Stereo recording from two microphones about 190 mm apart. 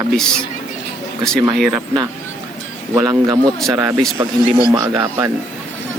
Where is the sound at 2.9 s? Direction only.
20° right (ahead or behind).